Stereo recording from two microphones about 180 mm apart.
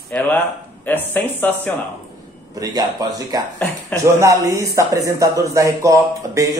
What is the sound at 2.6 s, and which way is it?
A man's voice, 20° right (ahead or behind).